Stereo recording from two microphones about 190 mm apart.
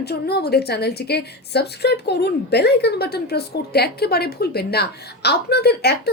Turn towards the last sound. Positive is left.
turn(degrees=60)  # may be behind; listen again after turning